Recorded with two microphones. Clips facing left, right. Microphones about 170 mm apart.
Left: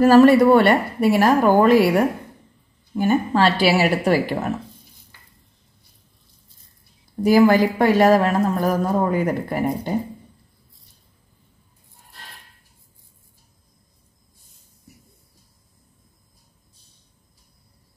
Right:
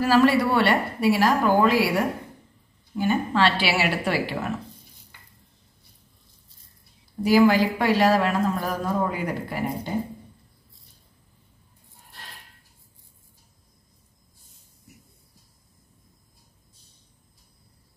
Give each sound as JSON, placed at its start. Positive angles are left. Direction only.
{"t": 0.0, "sound": "a man's voice", "side_deg": 50}
{"t": 7.2, "sound": "a man's voice", "side_deg": 45}